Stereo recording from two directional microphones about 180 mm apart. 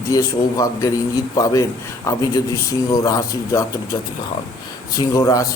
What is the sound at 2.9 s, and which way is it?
Speech, 20° left (ahead or behind).